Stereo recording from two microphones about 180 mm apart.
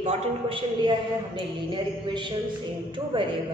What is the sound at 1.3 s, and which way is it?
Speech, 25° right (ahead or behind).